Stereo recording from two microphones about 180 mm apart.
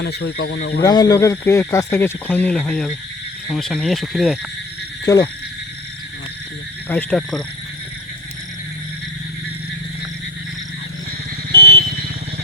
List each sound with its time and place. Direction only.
0.0 s speech: 65° left (ahead or behind)
0.8 s speech: 20° left (ahead or behind); by 4.4 s centre (ahead or behind)
5.1 s speech: 20° left (ahead or behind)
6.8 s speech: 10° left (ahead or behind)
11.5 s vehicle: 30° right (ahead or behind)
11.8 s vehicle: 55° right (ahead or behind)